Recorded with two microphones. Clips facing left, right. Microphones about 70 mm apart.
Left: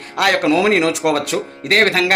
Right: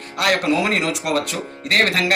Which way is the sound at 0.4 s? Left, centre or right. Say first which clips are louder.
Left 5 dB; left.